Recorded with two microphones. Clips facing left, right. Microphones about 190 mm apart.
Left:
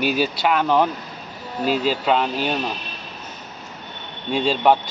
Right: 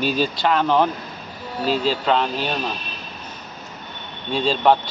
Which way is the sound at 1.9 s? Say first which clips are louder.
Even; 10° left (ahead or behind).